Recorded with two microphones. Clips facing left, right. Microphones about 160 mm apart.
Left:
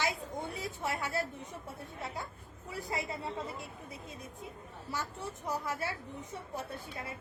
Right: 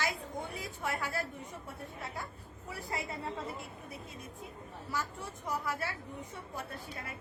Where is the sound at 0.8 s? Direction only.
25° left (ahead or behind).